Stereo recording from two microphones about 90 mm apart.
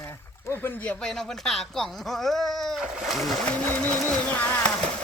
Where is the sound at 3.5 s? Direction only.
20° left (ahead or behind).